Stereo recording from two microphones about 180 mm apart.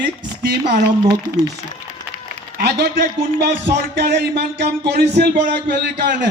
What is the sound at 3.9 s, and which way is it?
Music, 70° right (ahead or behind).